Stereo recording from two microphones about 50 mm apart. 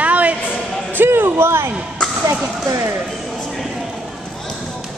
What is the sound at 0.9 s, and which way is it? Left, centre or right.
Music, right.